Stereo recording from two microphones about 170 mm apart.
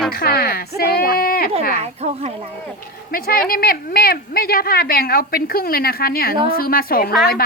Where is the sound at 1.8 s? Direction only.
40° right (ahead or behind).